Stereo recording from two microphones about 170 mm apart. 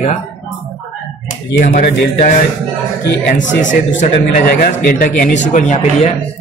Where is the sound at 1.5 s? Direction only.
55° left (ahead or behind).